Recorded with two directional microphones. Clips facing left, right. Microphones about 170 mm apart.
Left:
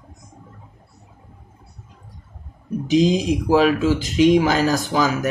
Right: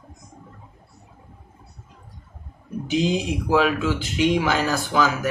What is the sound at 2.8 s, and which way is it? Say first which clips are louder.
Speech: left 6 dB; 40° left (ahead or behind).